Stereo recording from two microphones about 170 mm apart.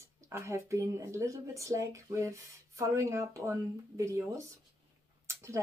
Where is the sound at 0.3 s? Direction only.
15° right (ahead or behind).